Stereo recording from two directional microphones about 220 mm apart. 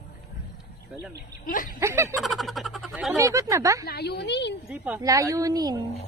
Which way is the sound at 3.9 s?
50° left (ahead or behind).